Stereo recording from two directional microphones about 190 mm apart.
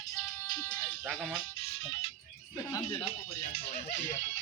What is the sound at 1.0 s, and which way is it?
Speech, 5° right (ahead or behind).